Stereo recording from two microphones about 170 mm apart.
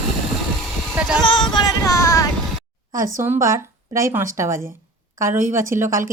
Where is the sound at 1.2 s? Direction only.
25° left (ahead or behind).